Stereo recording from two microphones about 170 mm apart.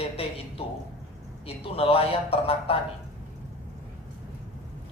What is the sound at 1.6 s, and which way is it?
Speech, 35° left (ahead or behind).